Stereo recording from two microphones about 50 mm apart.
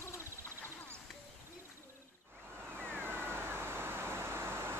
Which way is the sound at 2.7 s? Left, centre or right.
Right.